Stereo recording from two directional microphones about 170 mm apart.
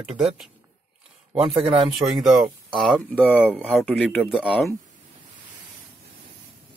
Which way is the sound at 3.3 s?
10° left (ahead or behind).